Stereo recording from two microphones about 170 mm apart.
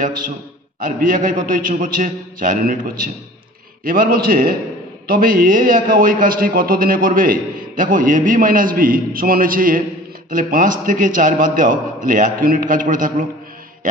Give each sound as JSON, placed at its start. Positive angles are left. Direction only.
{"t": 0.7, "sound": "a man's voice", "side_deg": -55}